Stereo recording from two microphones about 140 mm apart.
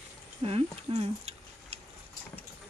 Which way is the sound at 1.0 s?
45° right (ahead or behind).